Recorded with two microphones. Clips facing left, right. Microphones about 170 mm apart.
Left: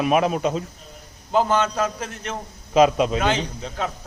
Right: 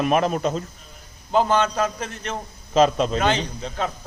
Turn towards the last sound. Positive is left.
turn(degrees=5)  # may be behind; listen again after turning